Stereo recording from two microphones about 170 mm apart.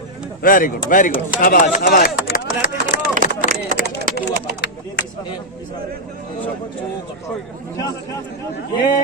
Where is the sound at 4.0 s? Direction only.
70° right (ahead or behind).